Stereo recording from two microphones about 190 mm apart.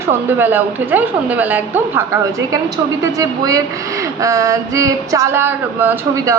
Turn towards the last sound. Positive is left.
turn(degrees=-10)  # may be behind; listen again after turning